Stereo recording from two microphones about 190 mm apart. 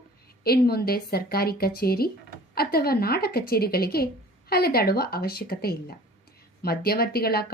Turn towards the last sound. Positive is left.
turn(degrees=55)  # may be behind; listen again after turning